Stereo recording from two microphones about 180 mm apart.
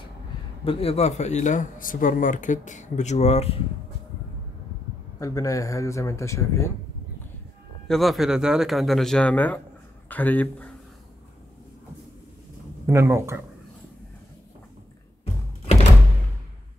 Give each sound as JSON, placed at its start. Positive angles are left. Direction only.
{"t": 0.7, "sound": "speech", "side_deg": 30}
{"t": 5.2, "sound": "speech", "side_deg": 20}
{"t": 7.9, "sound": "speech", "side_deg": 0}
{"t": 12.8, "sound": "speech", "side_deg": -15}